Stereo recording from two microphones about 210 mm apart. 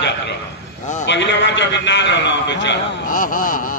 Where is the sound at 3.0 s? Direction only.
40° left (ahead or behind).